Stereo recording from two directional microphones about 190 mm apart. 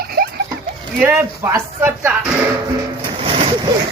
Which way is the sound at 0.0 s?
55° right (ahead or behind).